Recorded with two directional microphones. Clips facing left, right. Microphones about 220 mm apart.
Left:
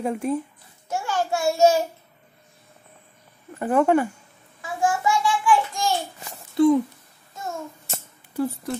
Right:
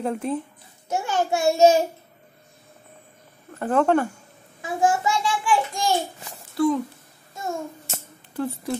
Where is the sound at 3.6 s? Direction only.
10° left (ahead or behind).